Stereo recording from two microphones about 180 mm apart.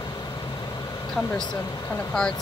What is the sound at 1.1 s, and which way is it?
Speech, 15° left (ahead or behind).